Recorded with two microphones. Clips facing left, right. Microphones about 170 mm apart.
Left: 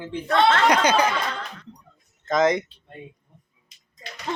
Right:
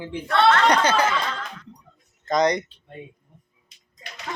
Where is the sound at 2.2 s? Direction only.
Centre (ahead or behind).